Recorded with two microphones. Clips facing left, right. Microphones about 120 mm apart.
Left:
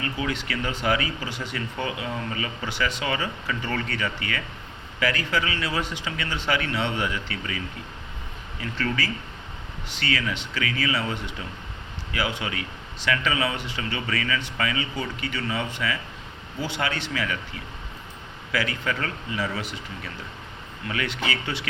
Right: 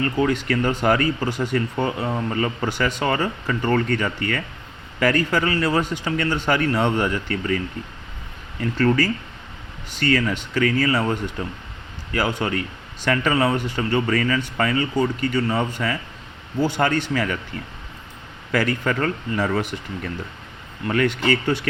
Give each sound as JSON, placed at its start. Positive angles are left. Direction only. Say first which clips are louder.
{"t": 0.0, "sound": "speech", "louder": "right 8 dB", "side_deg": -45}
{"t": 8.6, "sound": "speech", "louder": "right 9 dB", "side_deg": -45}
{"t": 18.5, "sound": "speech", "louder": "right 6 dB", "side_deg": -50}